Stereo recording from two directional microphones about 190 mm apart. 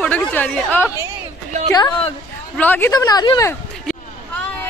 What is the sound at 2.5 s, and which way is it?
Speech, 10° left (ahead or behind).